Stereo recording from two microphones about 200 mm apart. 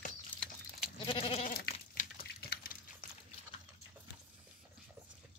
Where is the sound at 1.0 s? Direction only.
25° left (ahead or behind).